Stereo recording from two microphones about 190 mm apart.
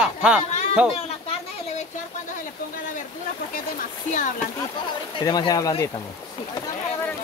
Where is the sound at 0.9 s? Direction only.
35° left (ahead or behind).